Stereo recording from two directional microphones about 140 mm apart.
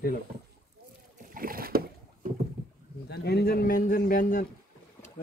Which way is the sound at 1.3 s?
90° right.